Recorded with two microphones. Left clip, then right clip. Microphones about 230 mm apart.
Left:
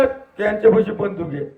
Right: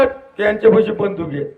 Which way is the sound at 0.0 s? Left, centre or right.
Right.